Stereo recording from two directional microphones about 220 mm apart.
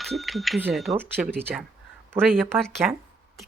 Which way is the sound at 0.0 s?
Centre (ahead or behind).